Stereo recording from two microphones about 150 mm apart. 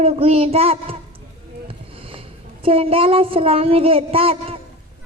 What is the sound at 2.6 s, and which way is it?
A woman's voice, 40° right (ahead or behind).